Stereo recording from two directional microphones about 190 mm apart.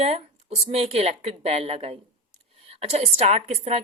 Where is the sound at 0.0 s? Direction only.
35° right (ahead or behind).